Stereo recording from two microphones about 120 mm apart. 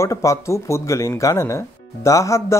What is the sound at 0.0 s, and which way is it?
Speech, 25° left (ahead or behind).